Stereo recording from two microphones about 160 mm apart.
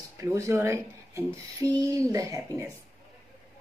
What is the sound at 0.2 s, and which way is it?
Speech, 20° right (ahead or behind).